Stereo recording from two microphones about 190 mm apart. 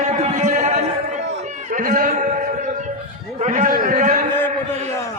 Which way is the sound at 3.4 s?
40° right (ahead or behind).